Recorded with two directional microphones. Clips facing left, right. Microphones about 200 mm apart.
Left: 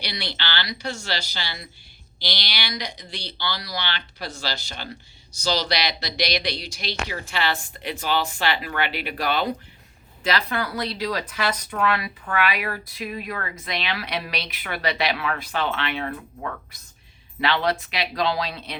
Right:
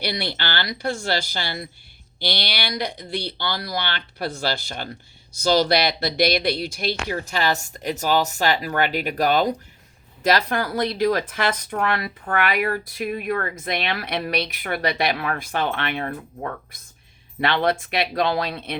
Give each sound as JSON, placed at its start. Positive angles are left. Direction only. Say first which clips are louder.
{"t": 0.0, "sound": "speech", "louder": "right 5 dB", "side_deg": -50}